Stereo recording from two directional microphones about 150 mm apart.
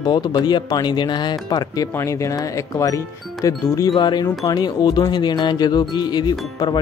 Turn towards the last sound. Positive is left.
turn(degrees=25)  # may be behind; listen again after turning